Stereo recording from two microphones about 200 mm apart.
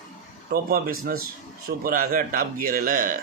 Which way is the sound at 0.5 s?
45° right (ahead or behind).